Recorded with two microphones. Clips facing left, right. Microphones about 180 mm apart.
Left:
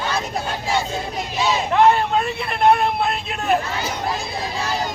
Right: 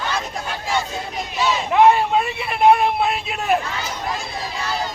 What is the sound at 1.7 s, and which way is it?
Hubbub, 5° right (ahead or behind).